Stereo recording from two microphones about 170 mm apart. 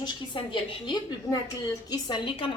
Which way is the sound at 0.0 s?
30° left (ahead or behind).